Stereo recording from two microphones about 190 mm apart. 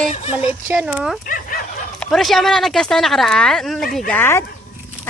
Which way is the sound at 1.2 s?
45° left (ahead or behind).